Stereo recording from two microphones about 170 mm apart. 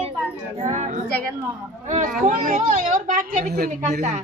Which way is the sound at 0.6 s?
45° right (ahead or behind).